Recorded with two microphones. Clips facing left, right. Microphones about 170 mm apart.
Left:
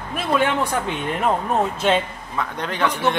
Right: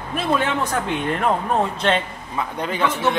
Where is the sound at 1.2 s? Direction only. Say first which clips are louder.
Left 1 dB; 5° left (ahead or behind).